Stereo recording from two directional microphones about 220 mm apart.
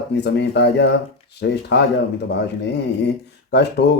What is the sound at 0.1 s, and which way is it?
Speech, 50° left (ahead or behind).